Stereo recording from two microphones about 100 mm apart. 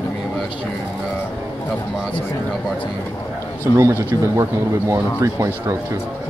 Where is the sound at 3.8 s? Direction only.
30° right (ahead or behind).